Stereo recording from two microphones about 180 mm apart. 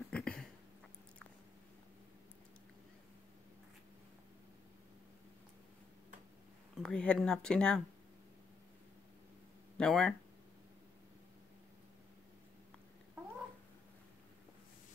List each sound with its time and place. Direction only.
0.1 s a sound: 5° left (ahead or behind)
6.8 s speech: 5° left (ahead or behind)
9.8 s speech: 5° left (ahead or behind)